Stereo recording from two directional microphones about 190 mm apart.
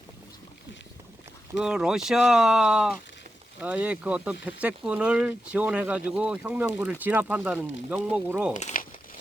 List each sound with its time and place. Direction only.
1.5 s speech: 5° right (ahead or behind)
8.5 s crumpling: 40° left (ahead or behind)